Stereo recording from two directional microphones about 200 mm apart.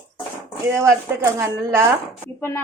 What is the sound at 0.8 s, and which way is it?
A woman's voice, 15° right (ahead or behind).